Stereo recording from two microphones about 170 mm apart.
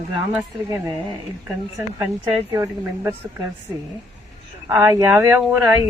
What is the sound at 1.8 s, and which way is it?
Speech, 15° right (ahead or behind).